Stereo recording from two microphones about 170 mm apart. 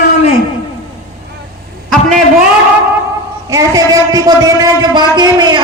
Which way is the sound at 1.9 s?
Centre (ahead or behind).